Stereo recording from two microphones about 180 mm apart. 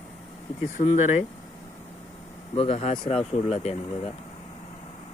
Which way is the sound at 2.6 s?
35° left (ahead or behind).